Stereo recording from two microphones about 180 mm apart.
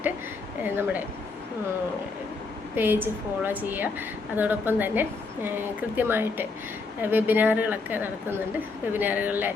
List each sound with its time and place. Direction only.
0.6 s a woman's voice: 10° right (ahead or behind)
2.7 s a woman's voice: 10° right (ahead or behind)